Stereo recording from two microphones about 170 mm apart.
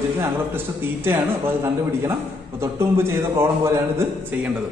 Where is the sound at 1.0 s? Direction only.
15° right (ahead or behind).